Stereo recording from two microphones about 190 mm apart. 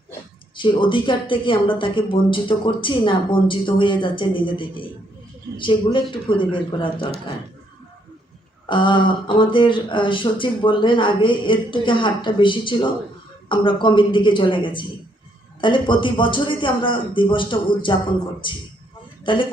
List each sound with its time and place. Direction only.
0.5 s speech: 25° left (ahead or behind)
8.7 s speech: 25° left (ahead or behind)